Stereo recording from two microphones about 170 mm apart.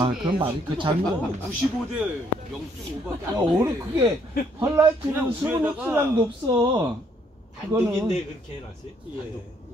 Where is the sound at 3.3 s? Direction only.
20° right (ahead or behind).